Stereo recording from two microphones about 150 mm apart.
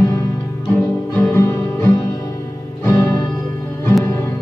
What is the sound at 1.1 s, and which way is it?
Music, 15° left (ahead or behind).